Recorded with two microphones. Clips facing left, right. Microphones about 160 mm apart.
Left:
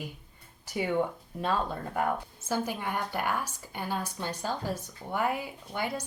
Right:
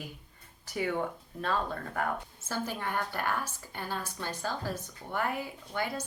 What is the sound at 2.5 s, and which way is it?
A woman's voice, 15° left (ahead or behind).